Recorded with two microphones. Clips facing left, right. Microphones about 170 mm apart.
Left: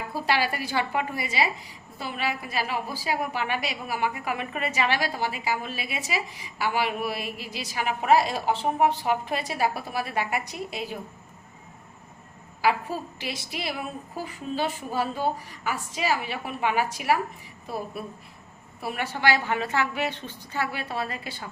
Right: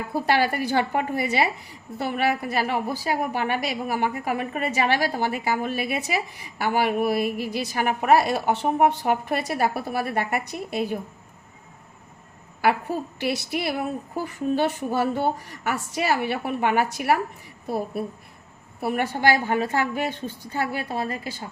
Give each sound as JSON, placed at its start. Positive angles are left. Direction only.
{"t": 0.1, "sound": "a woman's voice", "side_deg": -50}
{"t": 12.6, "sound": "a woman's voice", "side_deg": -60}
{"t": 18.8, "sound": "a woman's voice", "side_deg": -55}